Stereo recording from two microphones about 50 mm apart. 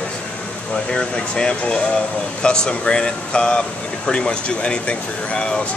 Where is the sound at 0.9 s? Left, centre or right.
Centre.